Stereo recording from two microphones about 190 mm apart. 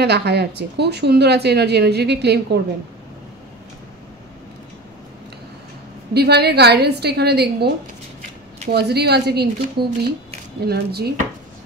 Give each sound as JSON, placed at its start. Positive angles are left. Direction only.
{"t": 0.0, "sound": "speech", "side_deg": -60}
{"t": 6.1, "sound": "speech", "side_deg": -60}
{"t": 8.7, "sound": "speech", "side_deg": -60}